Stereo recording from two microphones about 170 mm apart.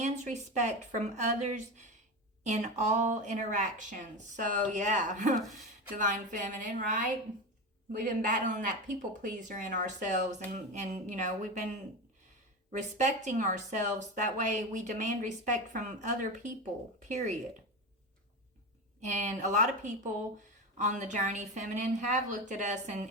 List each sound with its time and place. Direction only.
0.0 s speech: 45° right (ahead or behind)
8.0 s speech: 50° right (ahead or behind)
19.0 s speech: 45° right (ahead or behind)